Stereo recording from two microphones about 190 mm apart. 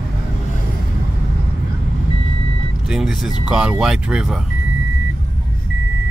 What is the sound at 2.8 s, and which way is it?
Vehicle, centre (ahead or behind).